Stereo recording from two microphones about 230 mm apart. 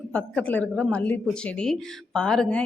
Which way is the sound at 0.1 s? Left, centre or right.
Centre.